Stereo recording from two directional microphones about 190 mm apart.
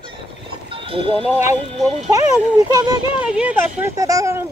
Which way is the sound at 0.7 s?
30° right (ahead or behind).